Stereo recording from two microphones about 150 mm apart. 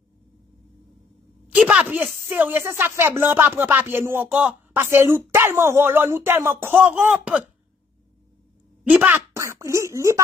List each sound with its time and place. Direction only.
1.5 s a woman's voice: 5° right (ahead or behind)
8.8 s speech: 10° right (ahead or behind)